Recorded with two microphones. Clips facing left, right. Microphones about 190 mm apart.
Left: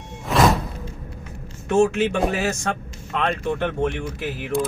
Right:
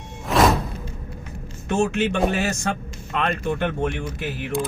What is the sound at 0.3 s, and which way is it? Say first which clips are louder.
Music: even; centre (ahead or behind).